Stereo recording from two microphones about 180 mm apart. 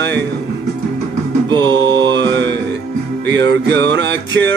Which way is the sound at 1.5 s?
25° right (ahead or behind).